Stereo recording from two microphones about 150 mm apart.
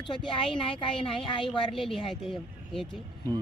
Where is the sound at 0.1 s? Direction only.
35° left (ahead or behind).